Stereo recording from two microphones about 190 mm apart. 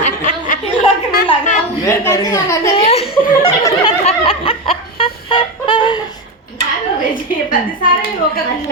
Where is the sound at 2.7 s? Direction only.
30° left (ahead or behind).